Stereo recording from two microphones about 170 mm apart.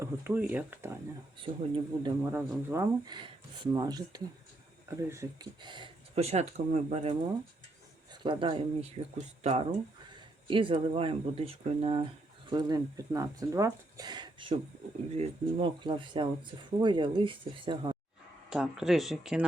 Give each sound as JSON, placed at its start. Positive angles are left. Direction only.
{"t": 0.0, "sound": "speech", "side_deg": -10}
{"t": 1.4, "sound": "speech", "side_deg": -30}
{"t": 2.2, "sound": "speech", "side_deg": -15}
{"t": 9.1, "sound": "speech", "side_deg": -40}
{"t": 12.5, "sound": "speech", "side_deg": -25}
{"t": 18.5, "sound": "speech", "side_deg": -5}